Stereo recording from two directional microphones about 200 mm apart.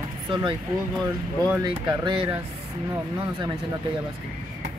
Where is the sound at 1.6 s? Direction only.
20° right (ahead or behind).